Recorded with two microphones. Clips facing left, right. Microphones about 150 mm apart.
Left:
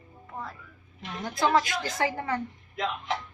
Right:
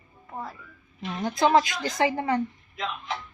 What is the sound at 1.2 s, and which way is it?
A woman's voice, 20° right (ahead or behind).